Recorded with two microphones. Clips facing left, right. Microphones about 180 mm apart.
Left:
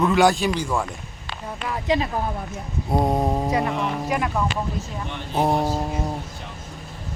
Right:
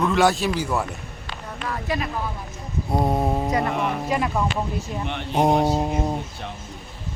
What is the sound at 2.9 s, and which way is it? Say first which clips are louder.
Mantra: left 1 dB; centre (ahead or behind).